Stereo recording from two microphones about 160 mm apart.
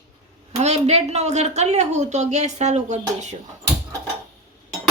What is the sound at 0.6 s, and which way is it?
A woman's voice, 45° right (ahead or behind).